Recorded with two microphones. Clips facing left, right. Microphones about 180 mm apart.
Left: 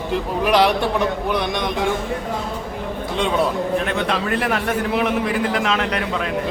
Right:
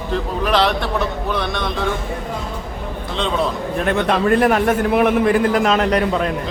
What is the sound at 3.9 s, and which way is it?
A man's voice, 45° right (ahead or behind).